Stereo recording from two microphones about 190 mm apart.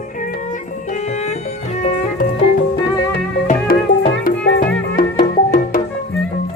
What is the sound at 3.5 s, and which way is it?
Music, 45° left (ahead or behind).